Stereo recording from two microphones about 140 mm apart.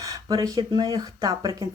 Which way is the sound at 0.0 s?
25° right (ahead or behind).